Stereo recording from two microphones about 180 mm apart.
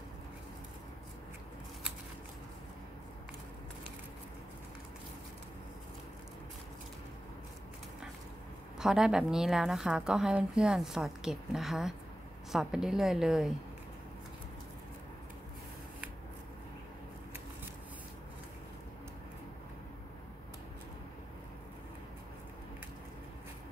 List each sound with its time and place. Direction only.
8.7 s a woman's voice: 5° right (ahead or behind)